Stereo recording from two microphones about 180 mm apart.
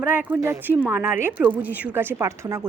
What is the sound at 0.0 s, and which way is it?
Speech, 10° right (ahead or behind).